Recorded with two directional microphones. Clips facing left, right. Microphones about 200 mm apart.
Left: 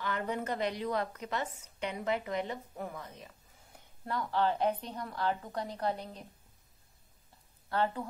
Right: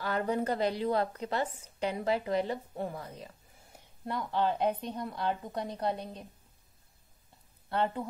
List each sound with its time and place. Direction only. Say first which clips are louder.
0.0 s speech: right 4 dB; 35° right (ahead or behind)
4.0 s a woman's voice: even; 20° right (ahead or behind)
7.7 s a woman's voice: right 1 dB; 20° right (ahead or behind)